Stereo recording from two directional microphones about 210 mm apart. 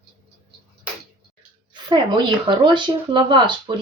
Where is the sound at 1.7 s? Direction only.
20° right (ahead or behind).